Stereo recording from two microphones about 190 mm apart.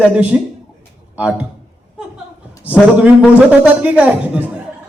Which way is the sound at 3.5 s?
5° right (ahead or behind).